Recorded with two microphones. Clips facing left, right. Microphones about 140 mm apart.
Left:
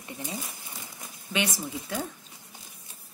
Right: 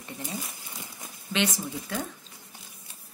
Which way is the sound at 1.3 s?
10° left (ahead or behind).